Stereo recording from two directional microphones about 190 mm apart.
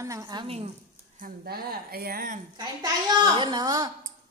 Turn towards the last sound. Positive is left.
turn(degrees=-20)  # may be behind; listen again after turning